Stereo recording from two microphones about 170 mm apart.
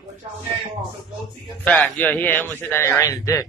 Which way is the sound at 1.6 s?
5° left (ahead or behind).